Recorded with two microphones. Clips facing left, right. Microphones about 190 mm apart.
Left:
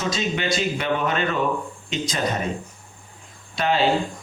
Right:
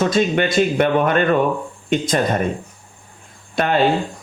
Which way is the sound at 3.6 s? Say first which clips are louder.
Right 4 dB; 55° right (ahead or behind).